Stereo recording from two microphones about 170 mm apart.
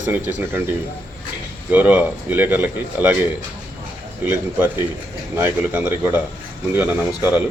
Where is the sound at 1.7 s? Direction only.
10° right (ahead or behind).